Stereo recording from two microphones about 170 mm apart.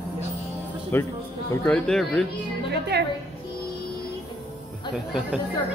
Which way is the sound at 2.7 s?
80° right.